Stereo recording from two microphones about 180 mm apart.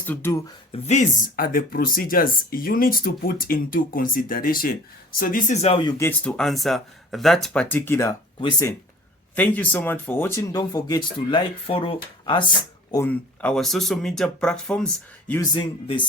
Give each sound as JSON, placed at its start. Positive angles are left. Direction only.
{"t": 0.0, "sound": "speech", "side_deg": 10}
{"t": 0.7, "sound": "speech", "side_deg": 35}
{"t": 5.6, "sound": "speech", "side_deg": 30}
{"t": 6.0, "sound": "speech", "side_deg": 10}
{"t": 9.3, "sound": "speech", "side_deg": 10}
{"t": 12.9, "sound": "speech", "side_deg": 10}
{"t": 15.5, "sound": "speech", "side_deg": 25}